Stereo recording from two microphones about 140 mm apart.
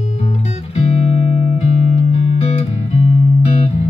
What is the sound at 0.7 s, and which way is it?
Music, 50° left (ahead or behind).